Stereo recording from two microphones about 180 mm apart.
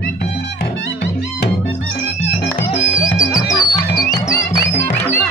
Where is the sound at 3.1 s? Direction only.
20° left (ahead or behind).